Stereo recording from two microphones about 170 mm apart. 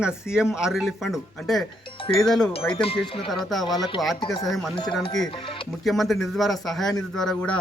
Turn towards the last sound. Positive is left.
turn(degrees=5)  # may be behind; listen again after turning